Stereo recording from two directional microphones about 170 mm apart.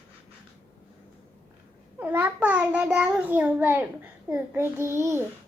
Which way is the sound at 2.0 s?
10° right (ahead or behind).